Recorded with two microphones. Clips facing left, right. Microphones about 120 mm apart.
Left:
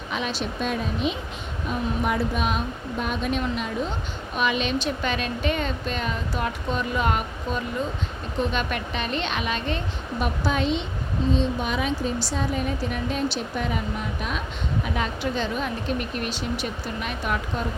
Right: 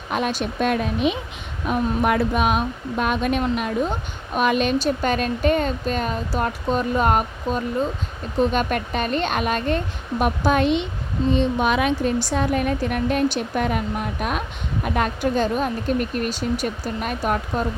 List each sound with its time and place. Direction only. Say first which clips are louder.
0.1 s a woman's voice: right 5 dB; 50° right (ahead or behind)